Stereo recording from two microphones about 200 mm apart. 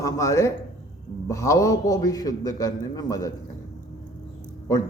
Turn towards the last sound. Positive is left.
turn(degrees=15)  # may be behind; listen again after turning